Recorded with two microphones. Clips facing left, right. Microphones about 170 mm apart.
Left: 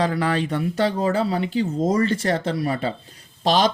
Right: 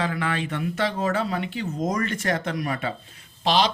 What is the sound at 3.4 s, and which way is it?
Speech, 45° left (ahead or behind).